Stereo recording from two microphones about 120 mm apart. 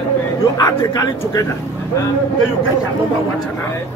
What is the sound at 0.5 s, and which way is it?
Speech, 30° left (ahead or behind).